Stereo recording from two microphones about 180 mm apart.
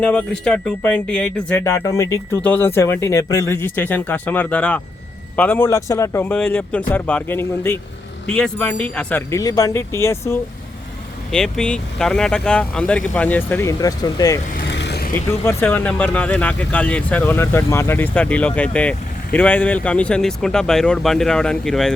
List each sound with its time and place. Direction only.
0.0 s speech: 5° left (ahead or behind)
11.3 s speech: 5° left (ahead or behind); by 14.3 s 20° left (ahead or behind)
14.7 s vehicle: 70° left (ahead or behind)
15.4 s speech: 10° left (ahead or behind)